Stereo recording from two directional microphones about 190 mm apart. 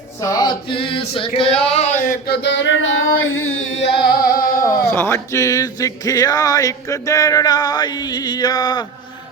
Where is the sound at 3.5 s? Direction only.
80° left.